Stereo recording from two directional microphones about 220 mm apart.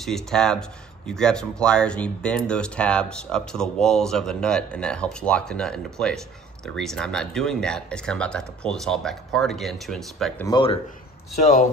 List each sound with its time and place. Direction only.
0.0 s speech: centre (ahead or behind)
10.4 s speech: 20° left (ahead or behind)